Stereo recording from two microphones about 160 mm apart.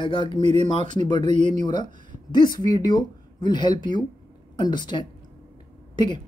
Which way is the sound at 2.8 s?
25° left (ahead or behind).